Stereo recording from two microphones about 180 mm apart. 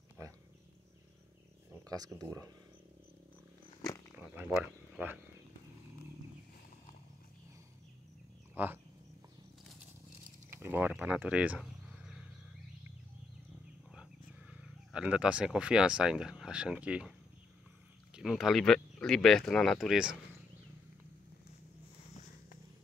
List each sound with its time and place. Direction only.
0.2 s wild animals: 15° right (ahead or behind)
2.1 s speech: 20° right (ahead or behind)
4.9 s speech: 10° right (ahead or behind)
8.6 s speech: 10° right (ahead or behind)
10.5 s speech: 10° right (ahead or behind)
14.5 s speech: 5° right (ahead or behind)
18.1 s speech: centre (ahead or behind)